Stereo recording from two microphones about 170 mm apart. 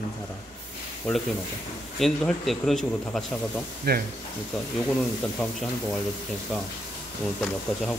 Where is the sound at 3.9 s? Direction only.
70° right (ahead or behind).